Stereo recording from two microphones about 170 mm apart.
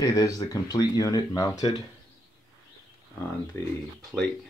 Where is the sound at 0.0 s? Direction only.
20° left (ahead or behind).